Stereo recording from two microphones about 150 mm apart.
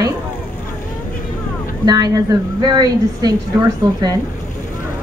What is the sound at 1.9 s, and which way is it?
A woman's voice, 25° right (ahead or behind).